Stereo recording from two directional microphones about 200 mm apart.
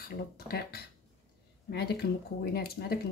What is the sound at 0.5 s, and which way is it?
Speech, 55° left (ahead or behind).